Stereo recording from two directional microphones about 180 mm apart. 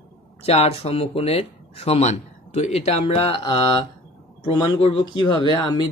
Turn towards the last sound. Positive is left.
turn(degrees=25)  # may be behind; listen again after turning